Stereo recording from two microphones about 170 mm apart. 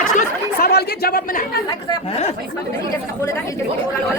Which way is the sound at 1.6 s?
30° left (ahead or behind).